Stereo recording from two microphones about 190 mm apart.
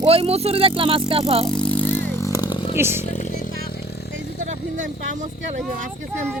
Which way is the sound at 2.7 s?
10° right (ahead or behind).